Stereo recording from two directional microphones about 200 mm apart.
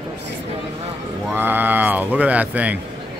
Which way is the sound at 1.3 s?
10° right (ahead or behind).